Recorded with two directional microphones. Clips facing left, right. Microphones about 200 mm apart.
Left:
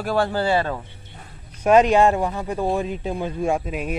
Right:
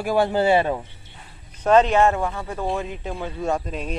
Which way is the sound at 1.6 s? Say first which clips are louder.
Left 1 dB; 10° left (ahead or behind).